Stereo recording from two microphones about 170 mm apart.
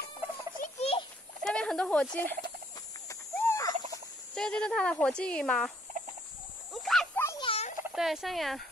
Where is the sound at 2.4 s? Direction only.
20° left (ahead or behind).